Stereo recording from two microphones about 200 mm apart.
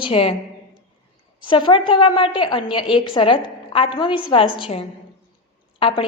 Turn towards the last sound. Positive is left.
turn(degrees=25)  # may be behind; listen again after turning